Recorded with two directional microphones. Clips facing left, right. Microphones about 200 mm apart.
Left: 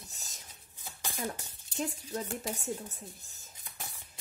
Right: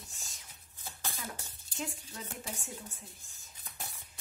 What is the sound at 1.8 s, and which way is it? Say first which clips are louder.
A woman's voice: left 6 dB; 40° left (ahead or behind).